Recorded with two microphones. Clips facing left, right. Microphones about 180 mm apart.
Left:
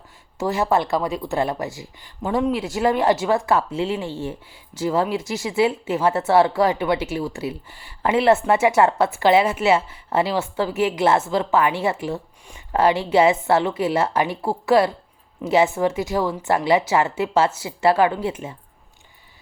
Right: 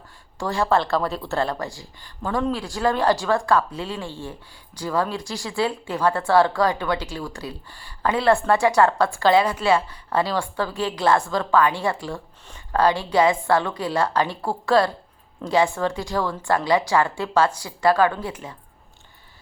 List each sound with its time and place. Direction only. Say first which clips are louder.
0.3 s speech: left 1 dB; 20° left (ahead or behind)